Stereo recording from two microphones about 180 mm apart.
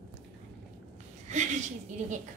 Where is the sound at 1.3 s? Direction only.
40° right (ahead or behind).